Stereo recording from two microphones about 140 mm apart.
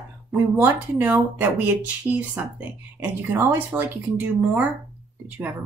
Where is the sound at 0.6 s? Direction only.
10° right (ahead or behind).